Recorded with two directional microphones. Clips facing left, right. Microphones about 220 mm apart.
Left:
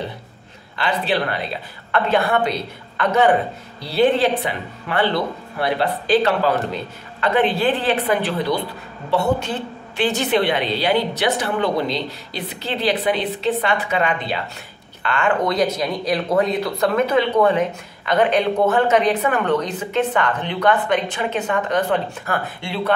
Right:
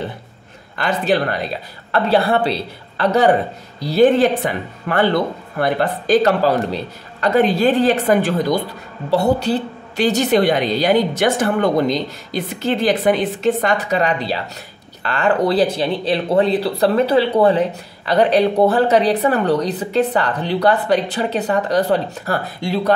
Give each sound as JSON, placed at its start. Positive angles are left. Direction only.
{"t": 0.7, "sound": "a woman's voice", "side_deg": -45}